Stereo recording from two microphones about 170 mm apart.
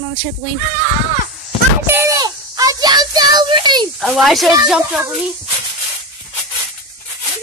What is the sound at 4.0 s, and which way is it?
Speech, centre (ahead or behind).